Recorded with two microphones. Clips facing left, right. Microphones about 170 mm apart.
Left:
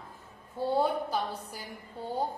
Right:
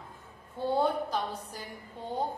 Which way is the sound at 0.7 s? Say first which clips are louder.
Even; 5° left (ahead or behind).